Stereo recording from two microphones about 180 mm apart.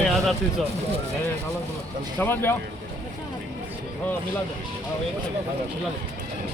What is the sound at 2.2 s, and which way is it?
Speech, 10° left (ahead or behind).